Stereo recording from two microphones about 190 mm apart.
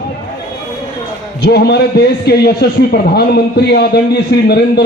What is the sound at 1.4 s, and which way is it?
A man's voice, 60° left (ahead or behind).